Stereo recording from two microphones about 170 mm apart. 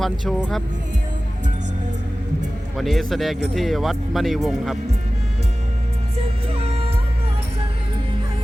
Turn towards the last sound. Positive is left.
turn(degrees=-35)  # may be behind; listen again after turning